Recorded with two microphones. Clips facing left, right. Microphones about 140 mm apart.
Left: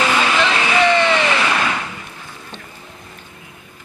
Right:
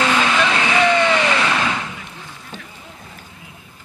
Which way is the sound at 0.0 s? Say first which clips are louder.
Even; 5° left (ahead or behind).